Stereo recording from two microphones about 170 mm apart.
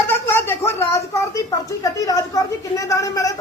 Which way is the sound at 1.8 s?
20° left (ahead or behind).